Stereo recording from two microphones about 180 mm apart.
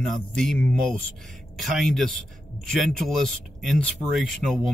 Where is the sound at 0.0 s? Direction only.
5° left (ahead or behind).